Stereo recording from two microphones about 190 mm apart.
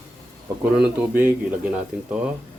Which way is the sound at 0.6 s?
10° right (ahead or behind).